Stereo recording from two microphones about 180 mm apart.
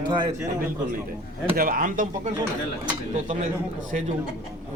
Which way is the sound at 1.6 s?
50° right (ahead or behind).